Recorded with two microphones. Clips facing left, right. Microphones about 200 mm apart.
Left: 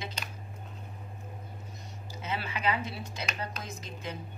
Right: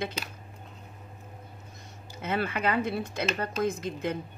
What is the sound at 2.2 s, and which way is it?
A woman's voice, 55° right (ahead or behind).